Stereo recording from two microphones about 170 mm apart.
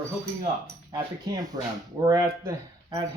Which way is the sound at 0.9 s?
25° right (ahead or behind).